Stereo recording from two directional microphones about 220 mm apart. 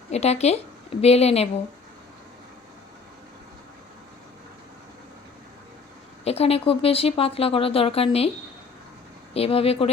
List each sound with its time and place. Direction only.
0.1 s speech: 30° left (ahead or behind)
6.2 s speech: 25° left (ahead or behind)
9.3 s speech: 25° left (ahead or behind)